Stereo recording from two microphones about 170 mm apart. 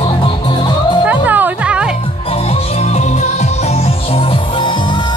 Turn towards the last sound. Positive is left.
turn(degrees=30)  # may be behind; listen again after turning